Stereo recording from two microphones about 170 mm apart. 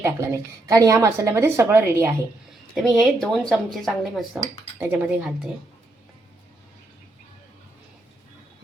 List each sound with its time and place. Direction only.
0.0 s speech: 15° right (ahead or behind)
2.7 s speech: centre (ahead or behind)